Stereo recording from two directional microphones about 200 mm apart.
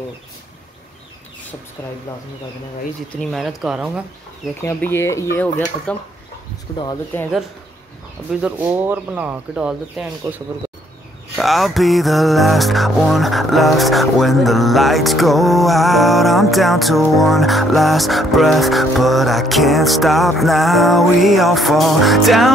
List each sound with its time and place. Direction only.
3.2 s music: centre (ahead or behind)
4.6 s speech: 10° left (ahead or behind)
8.3 s speech: 5° right (ahead or behind)
11.3 s music: centre (ahead or behind)